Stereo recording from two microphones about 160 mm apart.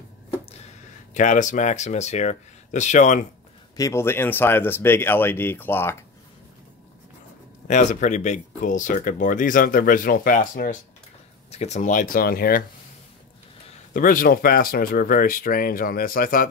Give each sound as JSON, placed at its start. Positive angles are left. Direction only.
{"t": 1.1, "sound": "speech", "side_deg": 50}
{"t": 3.7, "sound": "speech", "side_deg": 20}
{"t": 7.6, "sound": "speech", "side_deg": 50}
{"t": 11.5, "sound": "speech", "side_deg": 45}
{"t": 13.9, "sound": "speech", "side_deg": 60}